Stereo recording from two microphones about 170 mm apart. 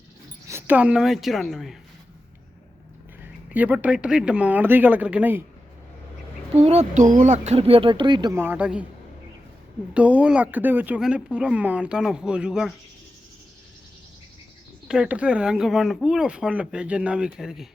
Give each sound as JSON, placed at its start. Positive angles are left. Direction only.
{"t": 0.4, "sound": "a woman's voice", "side_deg": -15}
{"t": 3.5, "sound": "speech", "side_deg": -10}
{"t": 6.6, "sound": "speech", "side_deg": -35}
{"t": 8.4, "sound": "speech", "side_deg": -10}
{"t": 9.9, "sound": "speech", "side_deg": -10}
{"t": 14.8, "sound": "speech", "side_deg": -5}